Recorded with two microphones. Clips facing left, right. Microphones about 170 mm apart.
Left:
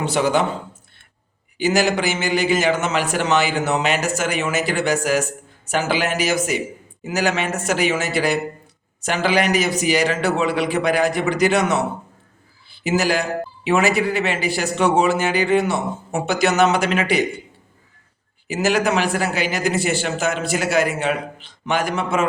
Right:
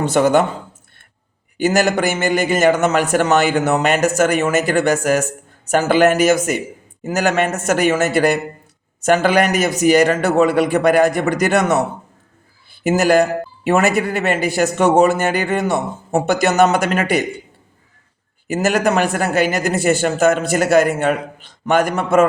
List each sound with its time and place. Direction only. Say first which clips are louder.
0.0 s speech: right 5 dB; 50° right (ahead or behind)
1.5 s speech: right 3 dB; 50° right (ahead or behind)
12.8 s speech: right 6 dB; 50° right (ahead or behind)
18.4 s speech: right 3 dB; 45° right (ahead or behind)